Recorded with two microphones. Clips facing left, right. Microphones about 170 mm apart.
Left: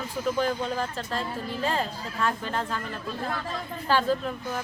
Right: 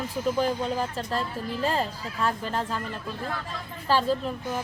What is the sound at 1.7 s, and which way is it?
Speech, 35° right (ahead or behind).